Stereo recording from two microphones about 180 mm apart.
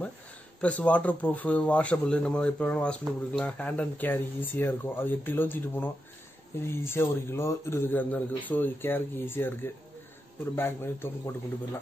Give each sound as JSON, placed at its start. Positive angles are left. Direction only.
{"t": 0.6, "sound": "speech", "side_deg": 5}